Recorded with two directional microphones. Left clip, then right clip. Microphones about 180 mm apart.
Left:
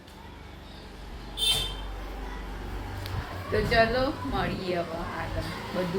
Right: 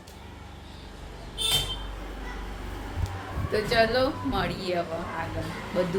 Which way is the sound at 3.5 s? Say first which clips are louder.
Even; 5° right (ahead or behind).